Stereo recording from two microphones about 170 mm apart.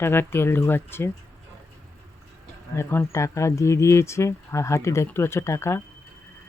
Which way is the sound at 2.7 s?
15° left (ahead or behind).